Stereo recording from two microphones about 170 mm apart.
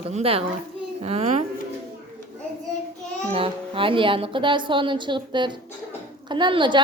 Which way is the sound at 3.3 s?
30° right (ahead or behind).